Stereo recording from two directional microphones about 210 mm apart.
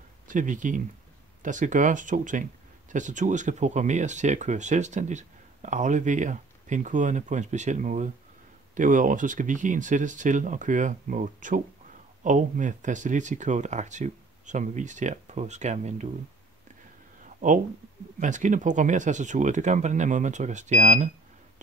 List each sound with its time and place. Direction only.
0.3 s speech: 40° right (ahead or behind)
17.4 s speech: 40° right (ahead or behind)